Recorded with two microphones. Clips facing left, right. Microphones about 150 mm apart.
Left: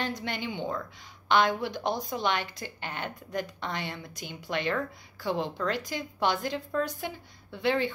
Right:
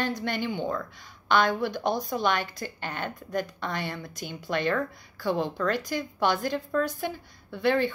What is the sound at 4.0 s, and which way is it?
Speech, 50° right (ahead or behind).